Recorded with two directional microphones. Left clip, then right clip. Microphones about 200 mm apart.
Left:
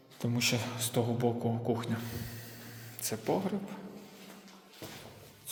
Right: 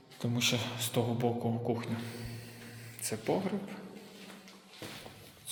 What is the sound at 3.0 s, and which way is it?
Speech, 10° left (ahead or behind).